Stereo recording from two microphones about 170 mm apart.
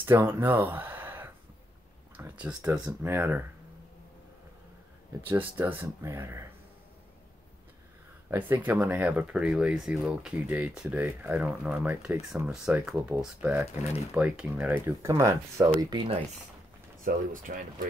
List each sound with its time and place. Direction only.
0.0 s speech: 10° right (ahead or behind)
5.2 s speech: 10° right (ahead or behind)
8.3 s speech: 10° right (ahead or behind)
17.0 s speech: 50° right (ahead or behind)